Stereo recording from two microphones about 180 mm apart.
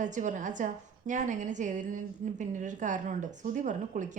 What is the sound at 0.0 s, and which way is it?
Speech, 45° right (ahead or behind).